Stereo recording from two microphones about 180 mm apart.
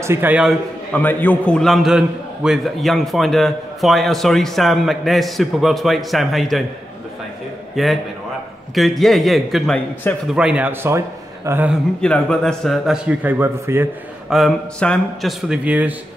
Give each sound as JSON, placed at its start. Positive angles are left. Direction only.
{"t": 0.0, "sound": "a man's voice", "side_deg": -10}
{"t": 0.9, "sound": "a man's voice", "side_deg": 10}
{"t": 7.7, "sound": "a man's voice", "side_deg": 0}
{"t": 12.0, "sound": "a man's voice", "side_deg": 5}
{"t": 14.3, "sound": "a man's voice", "side_deg": 5}